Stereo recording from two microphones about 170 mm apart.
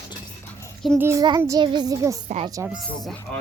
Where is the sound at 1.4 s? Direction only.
20° right (ahead or behind).